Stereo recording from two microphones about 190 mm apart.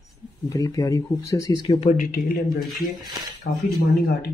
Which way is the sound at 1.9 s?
45° left (ahead or behind).